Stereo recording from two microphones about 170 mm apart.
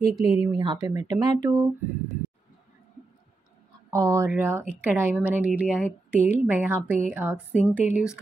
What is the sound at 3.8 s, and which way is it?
Speech, 20° right (ahead or behind).